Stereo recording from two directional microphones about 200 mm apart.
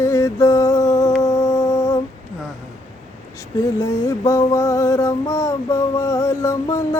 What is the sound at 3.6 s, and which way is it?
Music, 15° left (ahead or behind).